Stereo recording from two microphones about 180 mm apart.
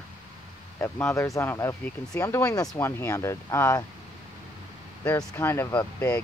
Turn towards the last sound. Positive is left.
turn(degrees=10)  # may be behind; listen again after turning